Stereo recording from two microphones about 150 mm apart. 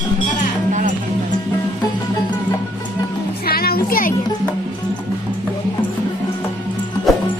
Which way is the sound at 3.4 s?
90° left.